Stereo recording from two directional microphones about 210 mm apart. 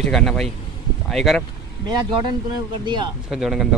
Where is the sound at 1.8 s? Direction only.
20° right (ahead or behind).